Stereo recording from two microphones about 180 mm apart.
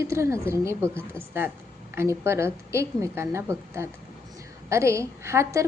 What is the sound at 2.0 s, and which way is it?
A woman's voice, 15° right (ahead or behind).